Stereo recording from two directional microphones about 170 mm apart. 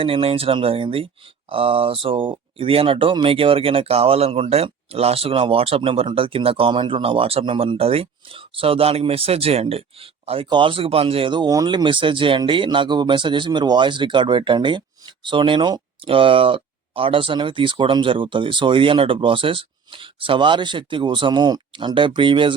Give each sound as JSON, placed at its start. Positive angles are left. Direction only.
{"t": 0.0, "sound": "speech", "side_deg": -30}